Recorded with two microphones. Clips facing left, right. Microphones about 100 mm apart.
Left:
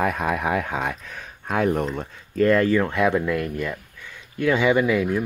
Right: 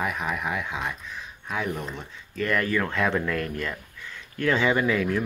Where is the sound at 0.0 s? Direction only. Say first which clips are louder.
Left 6 dB; 45° left (ahead or behind).